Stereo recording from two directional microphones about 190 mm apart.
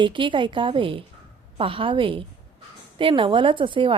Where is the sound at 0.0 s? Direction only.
25° right (ahead or behind).